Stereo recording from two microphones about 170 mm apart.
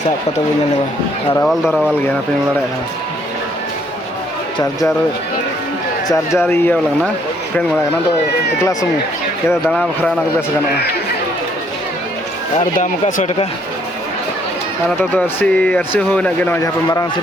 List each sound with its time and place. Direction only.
1.4 s speech: centre (ahead or behind)
6.1 s speech: 15° left (ahead or behind)
9.6 s speech: 5° left (ahead or behind)
12.5 s speech: 50° left (ahead or behind)
14.8 s speech: 10° left (ahead or behind)